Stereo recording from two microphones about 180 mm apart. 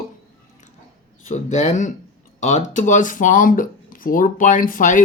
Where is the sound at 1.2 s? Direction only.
40° left (ahead or behind).